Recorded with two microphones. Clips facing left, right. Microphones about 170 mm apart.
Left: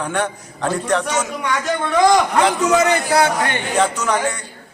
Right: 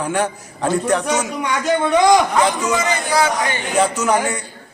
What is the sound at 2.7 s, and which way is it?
Speech, 65° left (ahead or behind).